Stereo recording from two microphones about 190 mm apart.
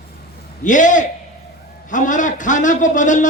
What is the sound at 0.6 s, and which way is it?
A man's voice, 40° left (ahead or behind).